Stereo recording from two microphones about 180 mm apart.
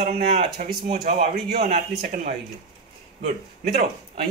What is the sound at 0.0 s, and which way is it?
Speech, 55° right (ahead or behind).